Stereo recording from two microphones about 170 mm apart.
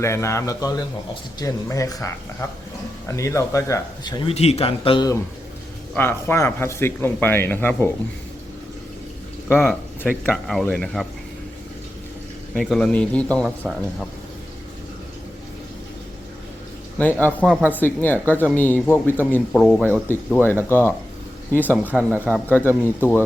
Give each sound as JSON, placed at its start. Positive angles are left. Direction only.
{"t": 0.0, "sound": "speech", "side_deg": 15}
{"t": 4.3, "sound": "speech", "side_deg": 35}
{"t": 5.9, "sound": "speech", "side_deg": 15}
{"t": 9.5, "sound": "speech", "side_deg": 10}
{"t": 12.5, "sound": "speech", "side_deg": 5}
{"t": 17.0, "sound": "speech", "side_deg": 10}